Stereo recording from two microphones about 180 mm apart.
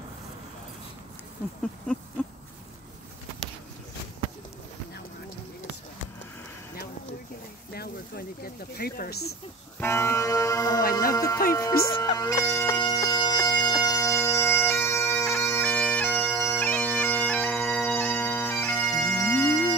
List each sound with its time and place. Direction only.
7.7 s speech: 60° left (ahead or behind)
9.8 s music: 15° left (ahead or behind)
11.1 s speech: 20° left (ahead or behind)
11.5 s music: 15° left (ahead or behind)
11.9 s bagpipes: 25° left (ahead or behind)